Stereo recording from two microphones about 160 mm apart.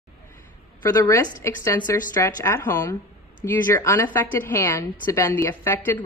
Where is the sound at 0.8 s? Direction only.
20° left (ahead or behind).